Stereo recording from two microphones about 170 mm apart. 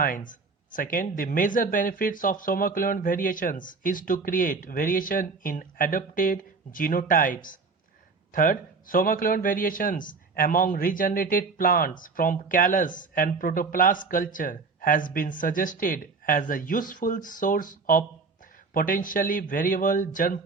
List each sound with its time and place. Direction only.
0.0 s a man's voice: 55° left (ahead or behind)